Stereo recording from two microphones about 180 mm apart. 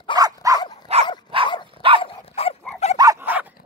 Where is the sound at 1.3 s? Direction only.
30° right (ahead or behind).